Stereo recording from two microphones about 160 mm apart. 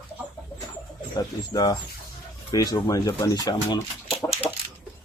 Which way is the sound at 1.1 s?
25° left (ahead or behind).